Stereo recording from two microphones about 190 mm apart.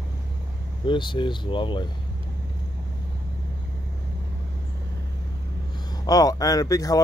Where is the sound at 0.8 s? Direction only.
25° left (ahead or behind).